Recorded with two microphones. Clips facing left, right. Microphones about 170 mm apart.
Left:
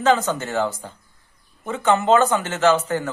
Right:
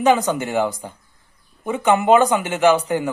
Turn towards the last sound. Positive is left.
turn(degrees=-10)  # may be behind; listen again after turning